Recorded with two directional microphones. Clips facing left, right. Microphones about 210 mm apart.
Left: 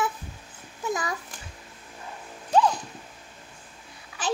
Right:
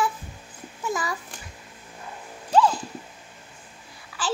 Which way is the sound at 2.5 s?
20° left (ahead or behind).